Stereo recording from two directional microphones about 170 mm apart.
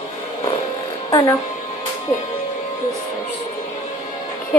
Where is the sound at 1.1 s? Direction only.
20° left (ahead or behind).